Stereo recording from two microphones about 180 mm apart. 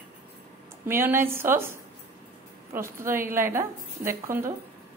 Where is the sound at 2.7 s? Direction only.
15° right (ahead or behind).